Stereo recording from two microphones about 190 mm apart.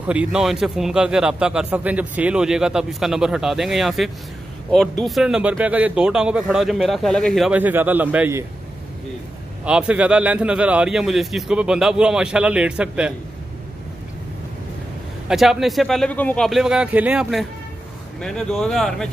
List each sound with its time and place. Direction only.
0.0 s a man's voice: 5° right (ahead or behind)
9.7 s a man's voice: 5° right (ahead or behind)
15.2 s a man's voice: centre (ahead or behind)